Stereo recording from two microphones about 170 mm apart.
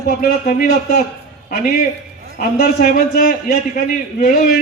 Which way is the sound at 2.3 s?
65° left (ahead or behind).